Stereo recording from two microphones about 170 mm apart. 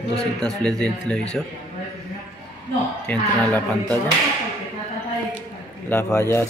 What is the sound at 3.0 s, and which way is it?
Speech, 10° left (ahead or behind).